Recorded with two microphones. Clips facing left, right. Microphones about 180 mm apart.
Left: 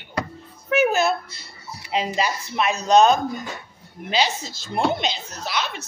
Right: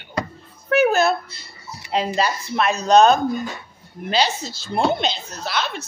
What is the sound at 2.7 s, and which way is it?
Speech, 35° right (ahead or behind).